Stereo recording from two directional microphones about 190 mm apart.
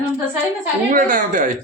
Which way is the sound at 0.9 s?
45° right (ahead or behind).